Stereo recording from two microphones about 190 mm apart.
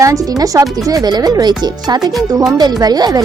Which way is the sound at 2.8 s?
20° right (ahead or behind).